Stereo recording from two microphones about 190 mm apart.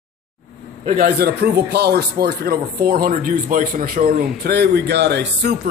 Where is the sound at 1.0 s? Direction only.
55° right (ahead or behind).